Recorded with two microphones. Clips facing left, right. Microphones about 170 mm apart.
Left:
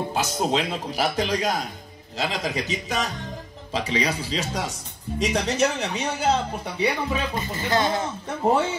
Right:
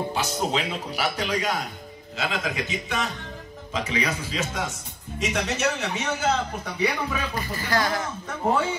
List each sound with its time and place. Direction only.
0.1 s speech: 40° left (ahead or behind); by 8.1 s 25° left (ahead or behind)